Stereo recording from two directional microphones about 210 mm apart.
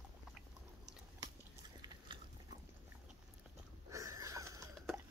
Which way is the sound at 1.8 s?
20° right (ahead or behind).